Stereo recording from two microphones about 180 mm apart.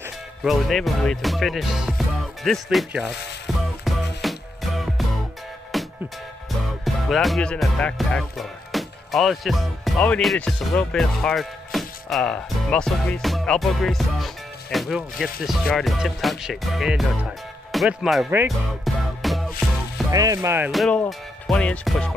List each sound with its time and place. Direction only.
0.4 s speech: centre (ahead or behind)
3.5 s music: centre (ahead or behind)
6.8 s speech: centre (ahead or behind)
18.9 s music: centre (ahead or behind)
20.1 s speech: 20° right (ahead or behind)
20.7 s speech: centre (ahead or behind)
21.1 s music: 5° left (ahead or behind)